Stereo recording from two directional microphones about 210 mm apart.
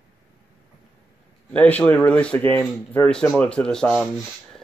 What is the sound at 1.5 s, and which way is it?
Speech, 5° left (ahead or behind).